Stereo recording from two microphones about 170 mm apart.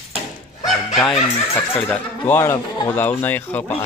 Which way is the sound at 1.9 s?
15° left (ahead or behind).